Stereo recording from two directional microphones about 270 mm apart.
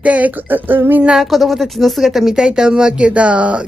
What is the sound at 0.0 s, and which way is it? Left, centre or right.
Speech, centre.